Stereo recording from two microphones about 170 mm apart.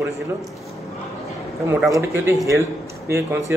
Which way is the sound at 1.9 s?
15° right (ahead or behind).